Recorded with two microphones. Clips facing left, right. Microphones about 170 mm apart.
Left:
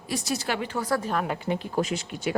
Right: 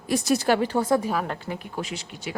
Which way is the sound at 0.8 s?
20° right (ahead or behind).